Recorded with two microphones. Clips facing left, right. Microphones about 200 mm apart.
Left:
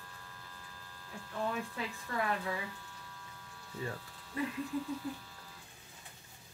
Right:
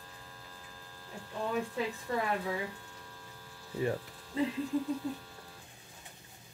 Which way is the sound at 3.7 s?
25° right (ahead or behind).